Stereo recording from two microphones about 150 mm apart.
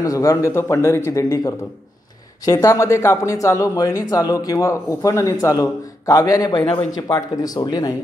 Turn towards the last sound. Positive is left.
turn(degrees=25)  # may be behind; listen again after turning